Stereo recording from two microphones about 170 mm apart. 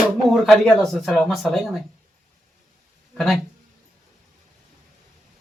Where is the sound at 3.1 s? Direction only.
Centre (ahead or behind).